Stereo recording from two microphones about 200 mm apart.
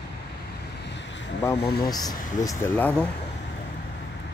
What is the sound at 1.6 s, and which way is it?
Speech, 50° left (ahead or behind).